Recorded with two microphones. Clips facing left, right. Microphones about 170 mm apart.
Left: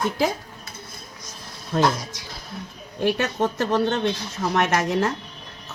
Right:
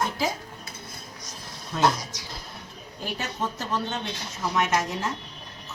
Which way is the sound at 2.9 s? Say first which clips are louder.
Left 10 dB; 70° left (ahead or behind).